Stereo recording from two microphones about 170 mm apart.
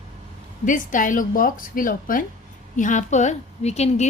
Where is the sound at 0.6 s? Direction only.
50° left (ahead or behind).